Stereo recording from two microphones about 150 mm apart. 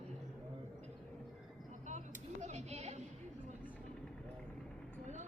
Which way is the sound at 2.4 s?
50° right (ahead or behind).